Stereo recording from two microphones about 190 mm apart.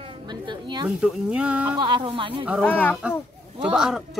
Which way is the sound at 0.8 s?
5° right (ahead or behind).